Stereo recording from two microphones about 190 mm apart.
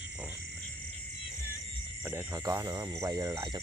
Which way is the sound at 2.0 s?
15° right (ahead or behind).